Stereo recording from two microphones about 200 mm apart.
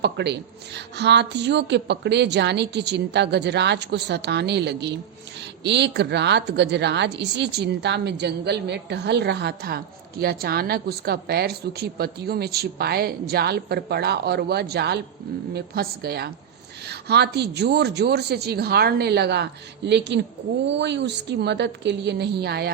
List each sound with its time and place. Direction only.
0.0 s a woman's voice: 55° right (ahead or behind)